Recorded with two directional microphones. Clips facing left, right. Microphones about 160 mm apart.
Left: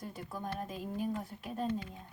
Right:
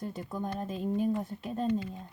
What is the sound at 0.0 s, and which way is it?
Speech, 25° right (ahead or behind).